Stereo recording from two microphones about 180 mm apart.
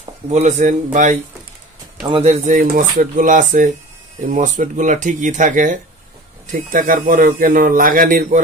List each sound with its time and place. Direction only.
0.3 s speech: 40° right (ahead or behind)
2.0 s a man's voice: 35° right (ahead or behind); by 8.4 s 50° right (ahead or behind)